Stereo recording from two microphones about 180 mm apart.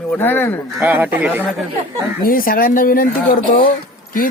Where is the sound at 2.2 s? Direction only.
50° left (ahead or behind).